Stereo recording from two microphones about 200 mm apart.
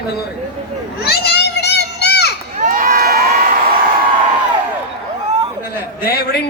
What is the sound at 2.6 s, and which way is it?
Crowd, 45° right (ahead or behind).